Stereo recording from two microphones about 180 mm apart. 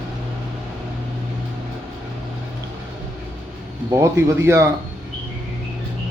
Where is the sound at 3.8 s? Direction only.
15° right (ahead or behind).